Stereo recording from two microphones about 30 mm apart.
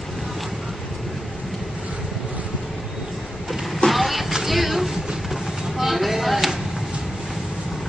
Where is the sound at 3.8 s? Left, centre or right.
Centre.